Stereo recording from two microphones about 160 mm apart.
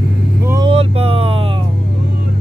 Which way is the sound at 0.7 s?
35° right (ahead or behind).